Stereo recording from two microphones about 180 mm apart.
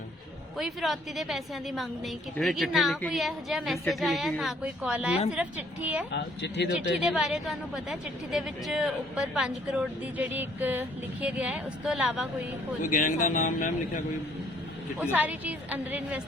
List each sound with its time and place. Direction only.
0.5 s a woman's voice: centre (ahead or behind)
6.1 s speech: 75° left (ahead or behind)
6.9 s a woman's voice: 5° right (ahead or behind)
12.8 s a man's voice: 45° left (ahead or behind)
14.9 s a woman's voice: 10° right (ahead or behind)